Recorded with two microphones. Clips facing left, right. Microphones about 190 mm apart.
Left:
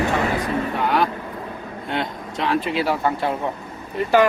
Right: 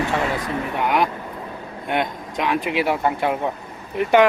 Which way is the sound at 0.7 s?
20° right (ahead or behind).